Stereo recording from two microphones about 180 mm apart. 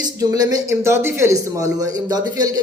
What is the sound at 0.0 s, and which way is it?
Speech, 20° right (ahead or behind).